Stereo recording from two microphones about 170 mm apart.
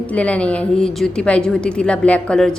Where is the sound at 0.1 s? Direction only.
5° left (ahead or behind).